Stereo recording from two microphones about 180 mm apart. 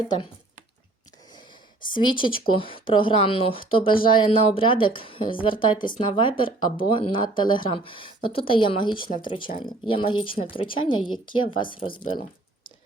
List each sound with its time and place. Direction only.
1.9 s speech: 25° left (ahead or behind)